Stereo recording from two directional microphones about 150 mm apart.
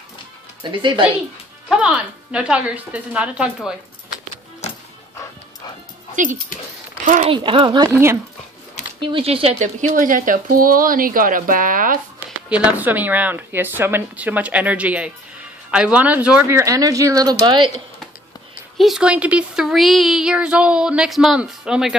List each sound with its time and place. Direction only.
0.6 s speech: 35° right (ahead or behind)
1.7 s speech: 5° right (ahead or behind)
7.2 s speech: 35° right (ahead or behind)
9.0 s speech: 35° right (ahead or behind)
9.6 s speech: 55° right (ahead or behind)
12.4 s speech: 10° right (ahead or behind); by 17.8 s 30° right (ahead or behind)
18.8 s a woman's voice: 5° right (ahead or behind)